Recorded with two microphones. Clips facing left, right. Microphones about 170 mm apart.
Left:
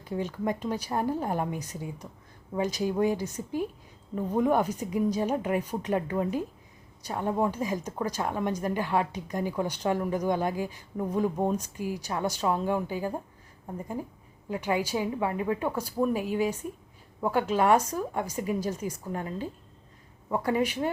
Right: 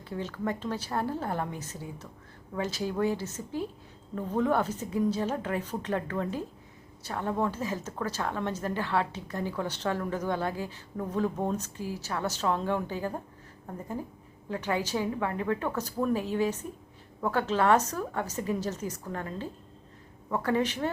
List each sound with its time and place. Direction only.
0.0 s a woman's voice: 15° left (ahead or behind)